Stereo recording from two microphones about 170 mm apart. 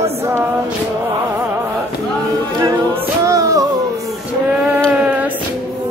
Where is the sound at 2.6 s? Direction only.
20° right (ahead or behind).